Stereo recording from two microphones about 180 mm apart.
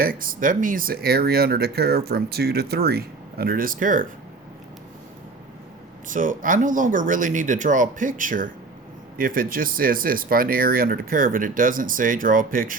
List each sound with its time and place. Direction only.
0.0 s speech: 50° right (ahead or behind)
6.1 s speech: 45° right (ahead or behind)